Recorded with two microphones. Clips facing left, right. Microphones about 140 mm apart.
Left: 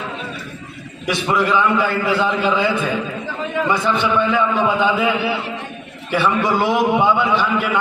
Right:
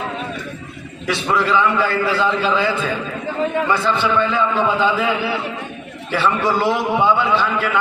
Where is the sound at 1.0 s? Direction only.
15° left (ahead or behind).